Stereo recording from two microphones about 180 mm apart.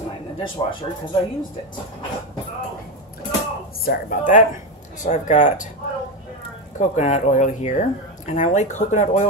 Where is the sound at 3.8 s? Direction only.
50° left (ahead or behind).